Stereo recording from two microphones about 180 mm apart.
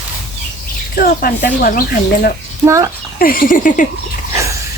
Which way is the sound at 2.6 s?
15° right (ahead or behind).